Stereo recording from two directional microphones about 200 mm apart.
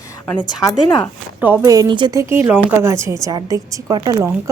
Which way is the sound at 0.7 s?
20° left (ahead or behind).